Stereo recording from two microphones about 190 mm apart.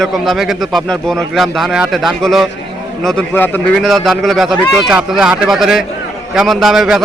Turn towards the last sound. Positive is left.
turn(degrees=0)  # may be behind; listen again after turning